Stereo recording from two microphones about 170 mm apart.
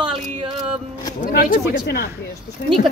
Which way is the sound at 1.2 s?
60° left (ahead or behind).